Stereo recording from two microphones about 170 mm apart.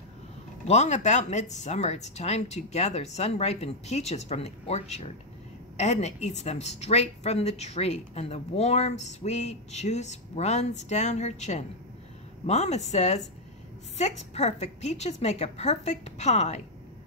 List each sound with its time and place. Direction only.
0.7 s a woman's voice: 40° left (ahead or behind)